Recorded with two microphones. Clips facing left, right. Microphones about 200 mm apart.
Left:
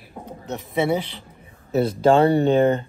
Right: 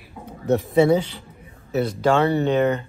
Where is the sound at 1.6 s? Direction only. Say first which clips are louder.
Left 3 dB; 30° left (ahead or behind).